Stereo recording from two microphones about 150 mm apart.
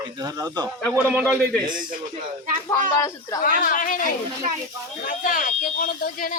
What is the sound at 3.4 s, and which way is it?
Speech, 60° left (ahead or behind).